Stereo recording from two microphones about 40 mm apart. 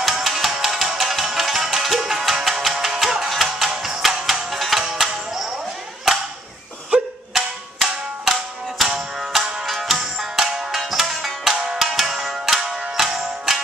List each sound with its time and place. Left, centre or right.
0.0 s music: centre
6.9 s music: right
7.3 s music: centre